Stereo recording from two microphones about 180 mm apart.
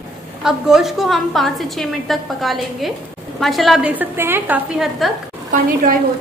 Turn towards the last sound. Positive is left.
turn(degrees=-50)  # may be behind; listen again after turning